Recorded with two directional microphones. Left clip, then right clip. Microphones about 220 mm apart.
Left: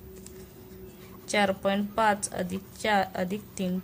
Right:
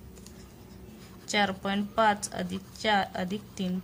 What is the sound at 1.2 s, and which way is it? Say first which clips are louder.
A woman's voice: left 3 dB; 10° left (ahead or behind).